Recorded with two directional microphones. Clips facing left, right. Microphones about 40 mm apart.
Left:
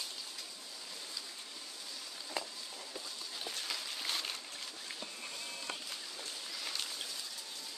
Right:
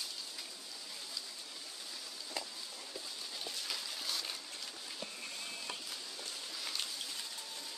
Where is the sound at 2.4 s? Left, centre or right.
Left.